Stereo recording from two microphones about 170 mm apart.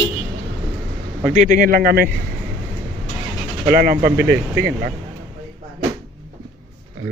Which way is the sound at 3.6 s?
65° right (ahead or behind).